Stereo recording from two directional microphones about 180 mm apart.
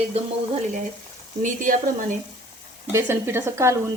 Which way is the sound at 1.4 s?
45° right (ahead or behind).